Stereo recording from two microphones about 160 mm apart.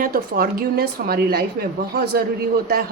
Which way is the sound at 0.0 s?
65° right (ahead or behind).